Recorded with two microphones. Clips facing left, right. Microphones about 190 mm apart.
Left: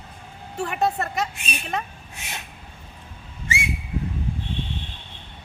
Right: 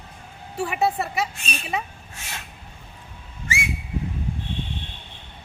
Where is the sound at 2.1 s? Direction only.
20° left (ahead or behind).